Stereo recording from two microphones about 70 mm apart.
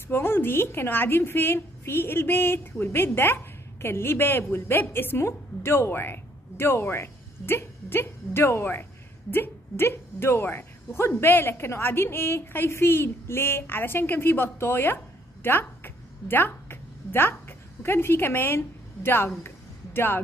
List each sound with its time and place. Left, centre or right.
0.1 s speech: left
15.4 s a sound: left
19.0 s music: left